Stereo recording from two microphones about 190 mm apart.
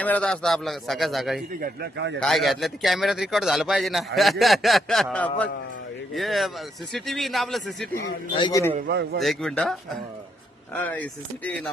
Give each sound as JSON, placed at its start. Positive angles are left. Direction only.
{"t": 0.0, "sound": "a man's voice", "side_deg": 5}
{"t": 1.6, "sound": "a man's voice", "side_deg": -60}
{"t": 2.2, "sound": "a man's voice", "side_deg": 0}
{"t": 8.4, "sound": "a man's voice", "side_deg": 25}
{"t": 8.9, "sound": "a man's voice", "side_deg": -60}
{"t": 9.2, "sound": "a man's voice", "side_deg": 0}
{"t": 10.8, "sound": "speech", "side_deg": 10}